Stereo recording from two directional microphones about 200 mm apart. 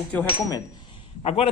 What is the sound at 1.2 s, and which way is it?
Speech, 30° left (ahead or behind).